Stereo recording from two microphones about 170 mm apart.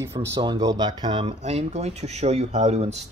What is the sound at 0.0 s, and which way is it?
Speech, 15° right (ahead or behind).